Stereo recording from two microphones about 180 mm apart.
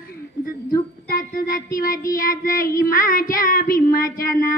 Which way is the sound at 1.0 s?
55° left (ahead or behind).